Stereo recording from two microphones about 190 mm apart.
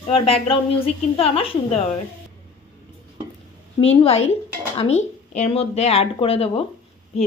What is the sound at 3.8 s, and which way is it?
Speech, 30° left (ahead or behind).